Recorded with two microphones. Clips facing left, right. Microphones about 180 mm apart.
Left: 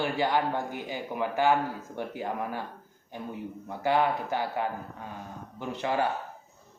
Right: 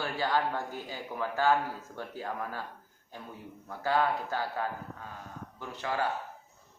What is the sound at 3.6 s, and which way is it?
Speech, 20° left (ahead or behind).